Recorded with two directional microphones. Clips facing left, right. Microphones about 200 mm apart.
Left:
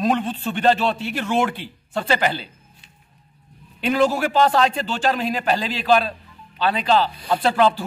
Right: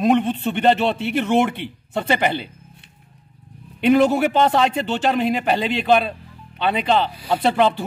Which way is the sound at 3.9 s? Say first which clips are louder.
Right 2 dB; 20° right (ahead or behind).